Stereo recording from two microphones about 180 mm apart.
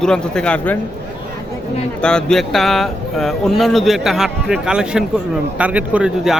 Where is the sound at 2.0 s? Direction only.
5° left (ahead or behind).